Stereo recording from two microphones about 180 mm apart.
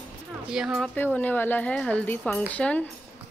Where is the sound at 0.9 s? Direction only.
10° left (ahead or behind).